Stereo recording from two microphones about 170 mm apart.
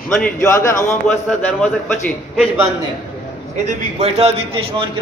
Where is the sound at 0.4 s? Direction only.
20° left (ahead or behind).